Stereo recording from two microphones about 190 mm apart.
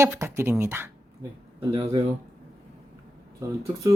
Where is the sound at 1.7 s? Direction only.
30° right (ahead or behind).